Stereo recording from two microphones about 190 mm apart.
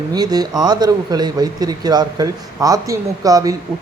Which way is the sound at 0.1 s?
20° right (ahead or behind).